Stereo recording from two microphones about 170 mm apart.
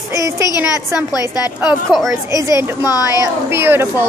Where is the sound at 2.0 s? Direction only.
20° right (ahead or behind).